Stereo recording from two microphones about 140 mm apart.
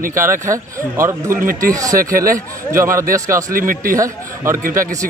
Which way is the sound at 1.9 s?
90° right.